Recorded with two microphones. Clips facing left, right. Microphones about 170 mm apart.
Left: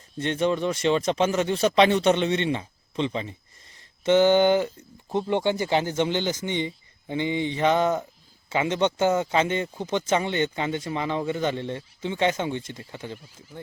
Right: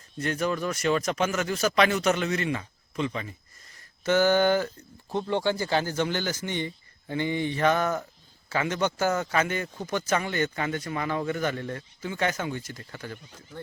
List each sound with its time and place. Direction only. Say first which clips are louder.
0.2 s speech: left 4 dB; 25° left (ahead or behind)